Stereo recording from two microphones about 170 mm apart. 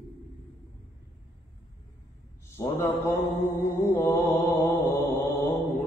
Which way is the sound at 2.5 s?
15° left (ahead or behind).